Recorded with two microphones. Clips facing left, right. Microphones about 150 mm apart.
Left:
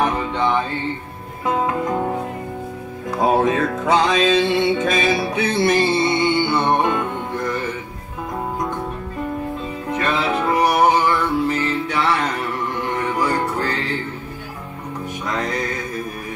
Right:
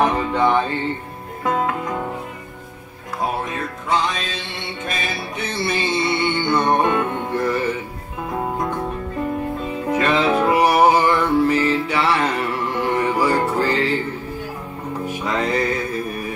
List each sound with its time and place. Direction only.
0.3 s mantra: 5° right (ahead or behind)
3.3 s music: 90° left; by 5.9 s 50° left (ahead or behind)
5.9 s music: 25° left (ahead or behind); by 7.6 s 5° right (ahead or behind)
9.8 s music: 10° right (ahead or behind)
15.0 s music: 10° right (ahead or behind)